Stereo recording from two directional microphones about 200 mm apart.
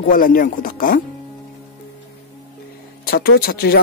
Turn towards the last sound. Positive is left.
turn(degrees=50)  # may be behind; listen again after turning